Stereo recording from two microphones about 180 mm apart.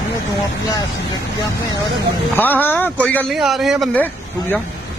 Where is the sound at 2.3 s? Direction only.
10° left (ahead or behind).